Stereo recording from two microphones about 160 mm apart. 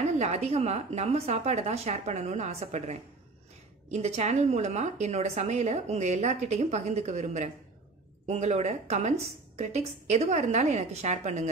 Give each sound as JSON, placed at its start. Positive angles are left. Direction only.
{"t": 0.2, "sound": "a woman's voice", "side_deg": -40}